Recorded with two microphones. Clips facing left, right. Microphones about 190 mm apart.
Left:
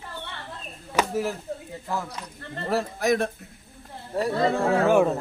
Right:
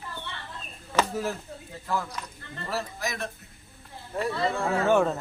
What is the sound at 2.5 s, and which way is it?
Speech, 55° left (ahead or behind).